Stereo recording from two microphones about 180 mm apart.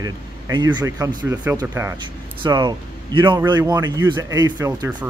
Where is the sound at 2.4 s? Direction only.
25° right (ahead or behind).